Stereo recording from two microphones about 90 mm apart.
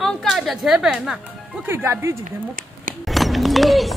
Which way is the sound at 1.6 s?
25° right (ahead or behind).